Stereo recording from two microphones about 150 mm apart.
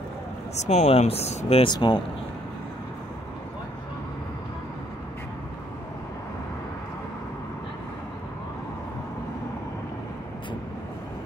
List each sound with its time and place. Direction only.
0.6 s speech: 50° left (ahead or behind)